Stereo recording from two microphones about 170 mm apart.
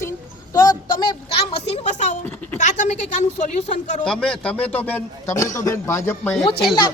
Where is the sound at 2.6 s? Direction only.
45° left (ahead or behind).